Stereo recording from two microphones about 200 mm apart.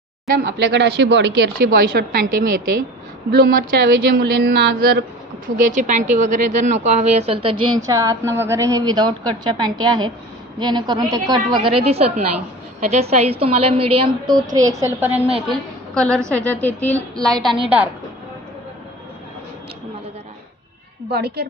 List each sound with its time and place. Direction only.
0.4 s a woman's voice: 60° right (ahead or behind)
3.3 s a woman's voice: 50° right (ahead or behind)
5.6 s speech: 40° right (ahead or behind)
7.8 s a woman's voice: 15° right (ahead or behind)
15.4 s a woman's voice: 5° left (ahead or behind)
21.1 s a woman's voice: 55° right (ahead or behind)